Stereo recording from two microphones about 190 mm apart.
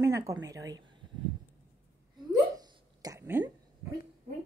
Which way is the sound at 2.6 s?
20° right (ahead or behind).